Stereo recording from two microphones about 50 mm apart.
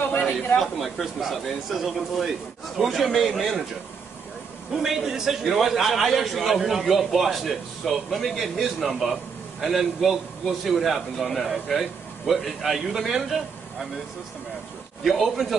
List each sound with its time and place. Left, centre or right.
0.6 s a man's voice: centre
4.8 s a man's voice: centre
15.0 s a man's voice: centre